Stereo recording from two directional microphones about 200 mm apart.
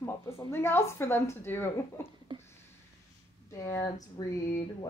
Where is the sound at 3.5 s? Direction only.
15° left (ahead or behind).